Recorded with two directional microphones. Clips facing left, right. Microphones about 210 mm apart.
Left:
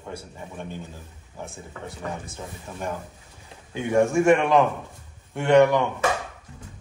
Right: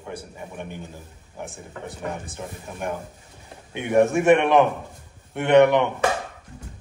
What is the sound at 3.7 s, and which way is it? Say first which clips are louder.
A man's voice: right 1 dB; 20° right (ahead or behind).